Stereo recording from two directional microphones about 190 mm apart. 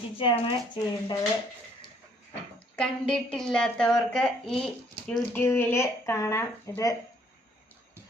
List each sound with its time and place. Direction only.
0.2 s speech: 25° left (ahead or behind)
2.7 s a woman's voice: 5° left (ahead or behind)